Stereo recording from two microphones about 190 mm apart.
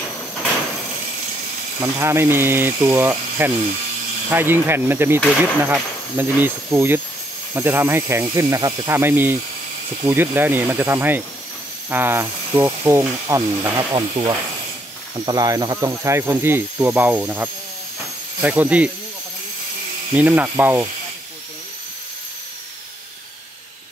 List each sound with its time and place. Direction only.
1.8 s speech: 15° right (ahead or behind)
20.2 s speech: 10° right (ahead or behind)